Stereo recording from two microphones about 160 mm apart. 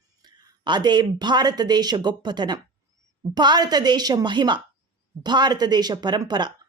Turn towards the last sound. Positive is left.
turn(degrees=-30)  # may be behind; listen again after turning